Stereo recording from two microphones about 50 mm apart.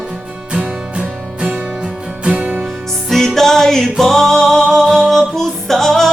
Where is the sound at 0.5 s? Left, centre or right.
Right.